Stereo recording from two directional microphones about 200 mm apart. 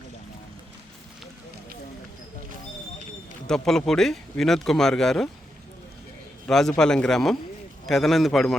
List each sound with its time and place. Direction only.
3.4 s speech: 5° left (ahead or behind)
6.5 s speech: centre (ahead or behind)